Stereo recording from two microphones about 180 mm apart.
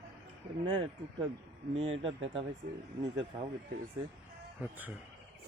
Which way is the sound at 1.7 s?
30° right (ahead or behind).